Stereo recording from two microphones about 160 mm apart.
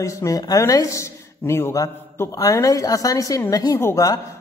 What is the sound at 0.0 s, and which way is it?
A man's voice, 20° left (ahead or behind).